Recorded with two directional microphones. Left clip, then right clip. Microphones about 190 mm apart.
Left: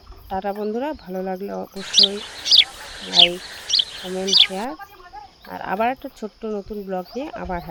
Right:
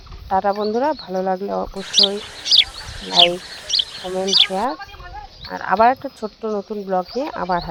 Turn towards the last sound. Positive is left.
turn(degrees=-5)  # may be behind; listen again after turning